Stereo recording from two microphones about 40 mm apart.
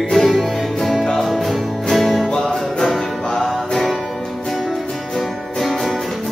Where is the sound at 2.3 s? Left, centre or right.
Centre.